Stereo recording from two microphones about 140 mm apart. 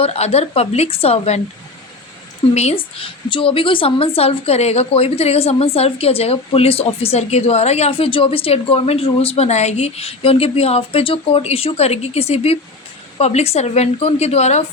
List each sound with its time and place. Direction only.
0.0 s speech: 45° left (ahead or behind)
2.6 s speech: 45° left (ahead or behind)